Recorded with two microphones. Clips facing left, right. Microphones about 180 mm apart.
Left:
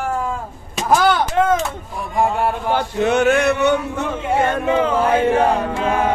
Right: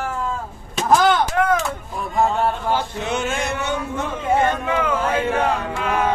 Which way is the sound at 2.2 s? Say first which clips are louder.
Left 1 dB; 10° left (ahead or behind).